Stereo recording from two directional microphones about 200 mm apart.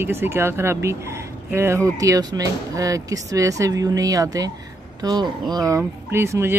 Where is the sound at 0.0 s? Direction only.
10° right (ahead or behind).